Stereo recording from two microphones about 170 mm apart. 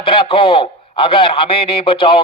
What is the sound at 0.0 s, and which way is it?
A man's voice, 30° left (ahead or behind).